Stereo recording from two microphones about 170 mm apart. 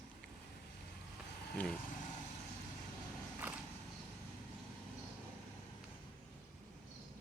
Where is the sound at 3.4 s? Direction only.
10° right (ahead or behind).